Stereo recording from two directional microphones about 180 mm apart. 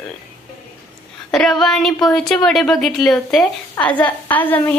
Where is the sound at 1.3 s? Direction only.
Centre (ahead or behind).